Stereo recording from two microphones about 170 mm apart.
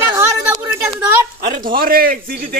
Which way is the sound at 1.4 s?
60° right (ahead or behind).